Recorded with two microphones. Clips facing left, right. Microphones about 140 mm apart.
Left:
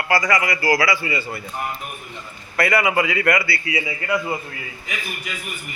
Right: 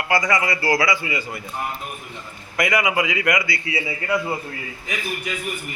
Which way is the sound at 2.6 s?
15° right (ahead or behind).